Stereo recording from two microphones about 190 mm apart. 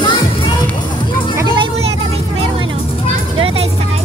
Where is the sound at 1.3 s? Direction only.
20° right (ahead or behind).